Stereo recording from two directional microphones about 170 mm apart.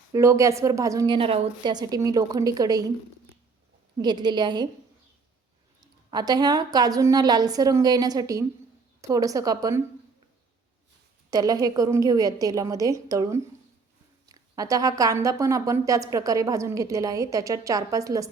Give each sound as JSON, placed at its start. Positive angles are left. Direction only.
{"t": 0.1, "sound": "a woman's voice", "side_deg": -20}
{"t": 4.0, "sound": "a woman's voice", "side_deg": -25}
{"t": 6.1, "sound": "a woman's voice", "side_deg": -25}
{"t": 11.3, "sound": "a woman's voice", "side_deg": -20}